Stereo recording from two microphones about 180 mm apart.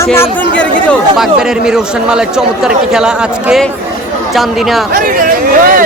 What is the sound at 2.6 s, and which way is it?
Speech, 5° right (ahead or behind).